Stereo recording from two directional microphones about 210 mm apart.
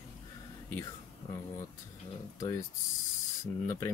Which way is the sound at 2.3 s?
15° left (ahead or behind).